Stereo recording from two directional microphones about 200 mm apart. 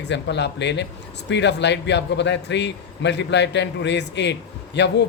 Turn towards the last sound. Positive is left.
turn(degrees=60)  # may be behind; listen again after turning